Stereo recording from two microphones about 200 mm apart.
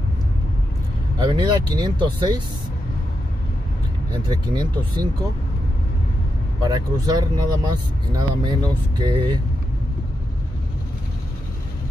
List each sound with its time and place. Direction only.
1.1 s speech: 20° right (ahead or behind)
4.1 s speech: 20° right (ahead or behind)
6.6 s speech: 20° right (ahead or behind)